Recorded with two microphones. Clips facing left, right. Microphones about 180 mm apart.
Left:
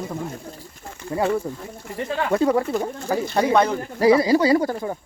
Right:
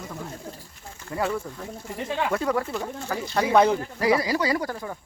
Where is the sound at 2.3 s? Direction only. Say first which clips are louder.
Left 10 dB; 25° left (ahead or behind).